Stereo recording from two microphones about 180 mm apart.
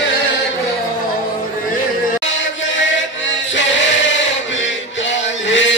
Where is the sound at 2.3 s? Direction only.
90° left.